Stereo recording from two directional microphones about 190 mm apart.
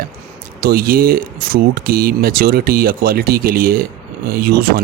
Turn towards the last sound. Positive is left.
turn(degrees=-55)  # may be behind; listen again after turning